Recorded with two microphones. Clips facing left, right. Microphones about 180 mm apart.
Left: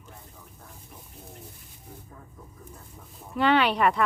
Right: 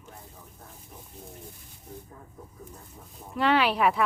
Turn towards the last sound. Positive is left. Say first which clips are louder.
# left 1 dB
turn(degrees=-5)  # may be behind; listen again after turning